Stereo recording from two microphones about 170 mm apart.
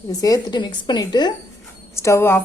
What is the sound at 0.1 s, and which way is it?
Speech, 20° left (ahead or behind).